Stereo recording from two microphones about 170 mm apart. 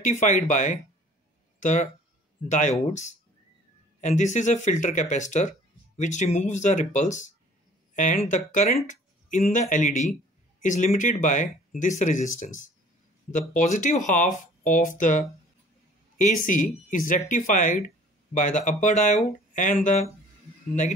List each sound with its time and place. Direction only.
0.0 s speech: 45° left (ahead or behind)